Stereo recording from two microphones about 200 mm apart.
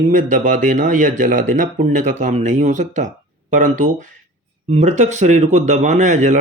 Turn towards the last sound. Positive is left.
turn(degrees=-35)  # may be behind; listen again after turning